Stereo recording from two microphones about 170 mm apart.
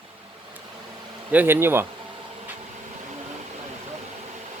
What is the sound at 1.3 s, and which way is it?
Speech, 10° right (ahead or behind).